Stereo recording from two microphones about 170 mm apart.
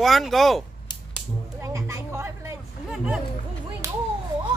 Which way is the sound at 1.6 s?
20° right (ahead or behind).